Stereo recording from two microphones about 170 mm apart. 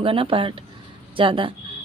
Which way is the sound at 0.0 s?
30° right (ahead or behind).